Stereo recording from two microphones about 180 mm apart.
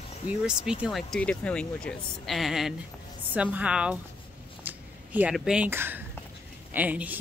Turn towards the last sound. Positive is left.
turn(degrees=-10)  # may be behind; listen again after turning